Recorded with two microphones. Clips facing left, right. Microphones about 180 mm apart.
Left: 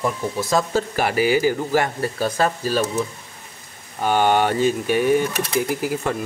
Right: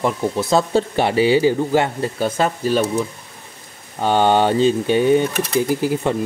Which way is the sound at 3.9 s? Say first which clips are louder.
Right 2 dB; 25° right (ahead or behind).